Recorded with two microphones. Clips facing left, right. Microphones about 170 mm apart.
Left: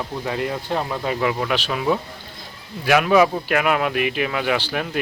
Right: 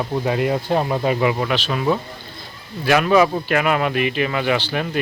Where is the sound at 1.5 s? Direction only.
5° left (ahead or behind).